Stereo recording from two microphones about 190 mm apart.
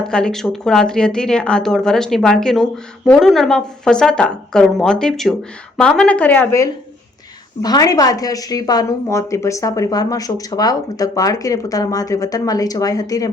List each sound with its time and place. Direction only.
0.0 s a woman's voice: 5° left (ahead or behind)